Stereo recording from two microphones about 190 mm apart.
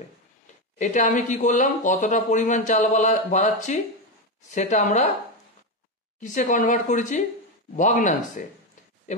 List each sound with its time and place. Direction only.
0.7 s speech: 40° left (ahead or behind)
6.2 s speech: 40° left (ahead or behind)